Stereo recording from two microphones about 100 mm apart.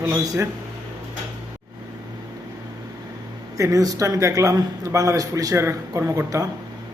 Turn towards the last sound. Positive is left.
turn(degrees=-30)  # may be behind; listen again after turning